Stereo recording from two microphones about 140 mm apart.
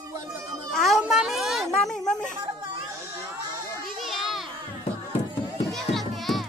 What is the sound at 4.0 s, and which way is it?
Children playing, centre (ahead or behind).